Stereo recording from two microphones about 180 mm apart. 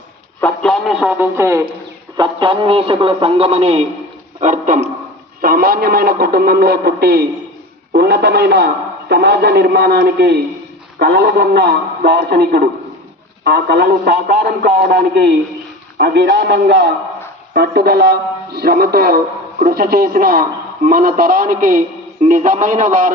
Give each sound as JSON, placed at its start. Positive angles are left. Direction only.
{"t": 0.3, "sound": "radio", "side_deg": 5}
{"t": 1.4, "sound": "speech", "side_deg": -15}
{"t": 2.1, "sound": "a man's voice", "side_deg": -25}
{"t": 5.4, "sound": "a man's voice", "side_deg": -55}